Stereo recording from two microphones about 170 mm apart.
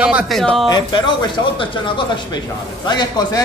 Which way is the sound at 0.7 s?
25° left (ahead or behind).